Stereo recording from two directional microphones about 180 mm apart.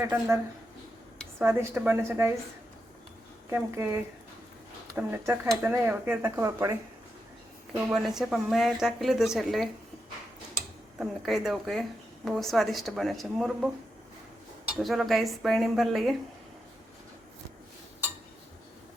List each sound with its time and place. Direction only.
0.0 s speech: 15° right (ahead or behind)
1.4 s speech: 10° right (ahead or behind)
3.5 s speech: 15° right (ahead or behind)
7.9 s a woman's voice: centre (ahead or behind)
14.8 s a woman's voice: centre (ahead or behind)